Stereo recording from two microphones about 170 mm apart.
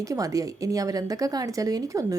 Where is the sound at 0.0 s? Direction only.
20° right (ahead or behind).